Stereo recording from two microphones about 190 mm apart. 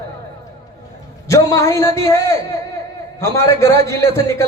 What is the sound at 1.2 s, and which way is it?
A man's voice, 15° left (ahead or behind).